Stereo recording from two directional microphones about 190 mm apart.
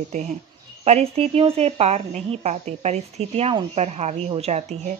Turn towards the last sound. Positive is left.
turn(degrees=-35)  # may be behind; listen again after turning